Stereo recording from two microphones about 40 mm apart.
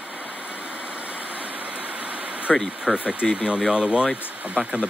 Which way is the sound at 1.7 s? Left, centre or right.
Right.